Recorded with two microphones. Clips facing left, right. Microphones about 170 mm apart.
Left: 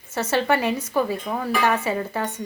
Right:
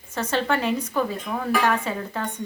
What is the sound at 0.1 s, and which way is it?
Speech, 10° left (ahead or behind).